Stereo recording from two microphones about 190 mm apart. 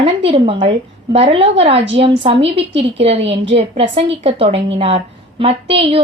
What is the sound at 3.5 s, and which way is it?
A woman's voice, 30° right (ahead or behind).